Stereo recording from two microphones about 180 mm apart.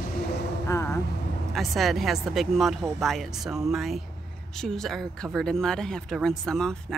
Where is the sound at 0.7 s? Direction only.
15° left (ahead or behind).